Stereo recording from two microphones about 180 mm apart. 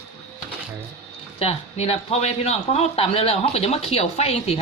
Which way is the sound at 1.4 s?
35° left (ahead or behind).